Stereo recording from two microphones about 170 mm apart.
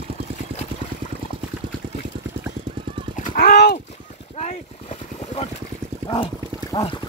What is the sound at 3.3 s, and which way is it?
Clip-clop, 70° left (ahead or behind).